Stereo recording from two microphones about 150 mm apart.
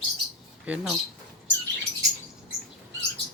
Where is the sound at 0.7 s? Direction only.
10° right (ahead or behind).